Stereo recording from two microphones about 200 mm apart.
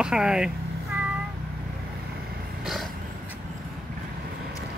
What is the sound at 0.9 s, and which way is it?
Cat, 10° right (ahead or behind).